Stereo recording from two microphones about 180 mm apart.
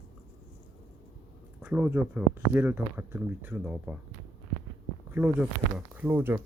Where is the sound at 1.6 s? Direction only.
10° right (ahead or behind).